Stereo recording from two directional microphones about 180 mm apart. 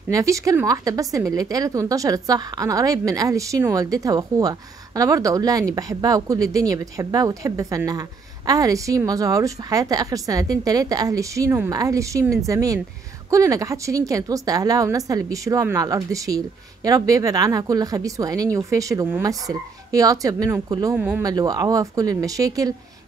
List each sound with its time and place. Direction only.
0.1 s a woman's voice: 15° right (ahead or behind)
20.9 s speech: 5° right (ahead or behind)
21.2 s a woman's voice: 20° right (ahead or behind)